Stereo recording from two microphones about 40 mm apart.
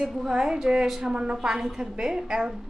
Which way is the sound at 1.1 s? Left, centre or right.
Right.